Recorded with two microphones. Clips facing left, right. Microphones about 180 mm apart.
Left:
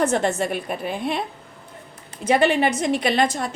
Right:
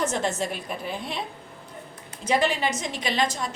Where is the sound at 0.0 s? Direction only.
60° left (ahead or behind).